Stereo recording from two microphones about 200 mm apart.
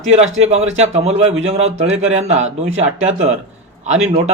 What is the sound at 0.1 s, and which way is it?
Speech, 30° right (ahead or behind).